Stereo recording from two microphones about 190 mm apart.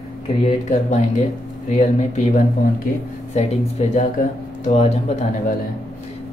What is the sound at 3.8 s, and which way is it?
Speech, 35° left (ahead or behind).